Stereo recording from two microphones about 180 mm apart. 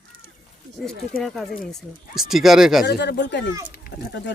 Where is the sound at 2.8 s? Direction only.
60° left (ahead or behind).